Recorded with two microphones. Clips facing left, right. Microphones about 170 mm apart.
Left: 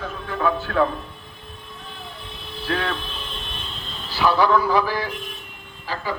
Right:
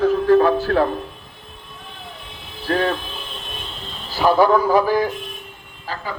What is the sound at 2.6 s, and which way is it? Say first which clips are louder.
Speech: right 6 dB; 40° right (ahead or behind).